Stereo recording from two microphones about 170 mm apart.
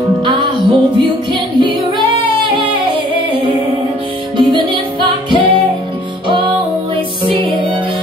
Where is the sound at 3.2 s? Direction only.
30° right (ahead or behind).